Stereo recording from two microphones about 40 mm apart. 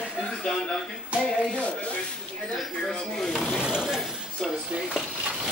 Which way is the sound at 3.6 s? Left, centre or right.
Right.